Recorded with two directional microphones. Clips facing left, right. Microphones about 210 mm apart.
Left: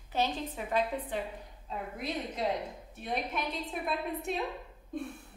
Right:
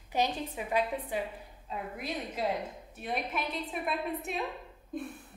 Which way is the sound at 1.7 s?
5° right (ahead or behind).